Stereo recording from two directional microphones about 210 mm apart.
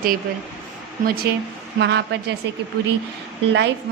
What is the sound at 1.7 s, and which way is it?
Speech, 55° right (ahead or behind).